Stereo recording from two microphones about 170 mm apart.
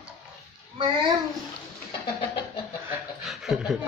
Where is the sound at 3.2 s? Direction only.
Centre (ahead or behind).